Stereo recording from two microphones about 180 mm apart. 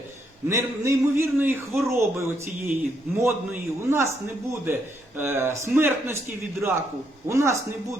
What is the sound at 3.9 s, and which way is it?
A man's voice, 15° right (ahead or behind).